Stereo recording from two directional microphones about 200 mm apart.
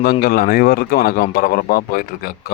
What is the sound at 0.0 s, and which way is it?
Speech, 50° left (ahead or behind).